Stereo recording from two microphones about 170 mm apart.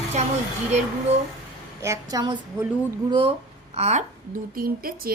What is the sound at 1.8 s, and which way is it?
A woman's voice, 20° right (ahead or behind).